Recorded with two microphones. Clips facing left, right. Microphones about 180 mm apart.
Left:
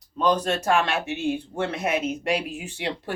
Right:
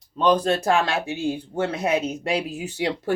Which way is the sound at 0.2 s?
30° right (ahead or behind).